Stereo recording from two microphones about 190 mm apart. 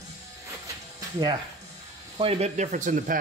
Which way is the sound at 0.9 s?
20° right (ahead or behind).